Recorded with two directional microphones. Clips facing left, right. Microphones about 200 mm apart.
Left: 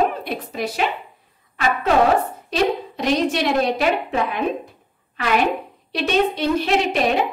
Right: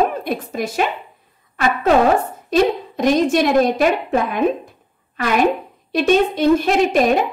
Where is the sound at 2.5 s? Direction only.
50° right (ahead or behind).